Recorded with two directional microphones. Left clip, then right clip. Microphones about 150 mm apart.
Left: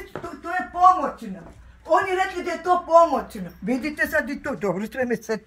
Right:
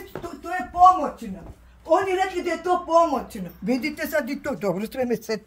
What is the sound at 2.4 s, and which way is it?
Speech, centre (ahead or behind).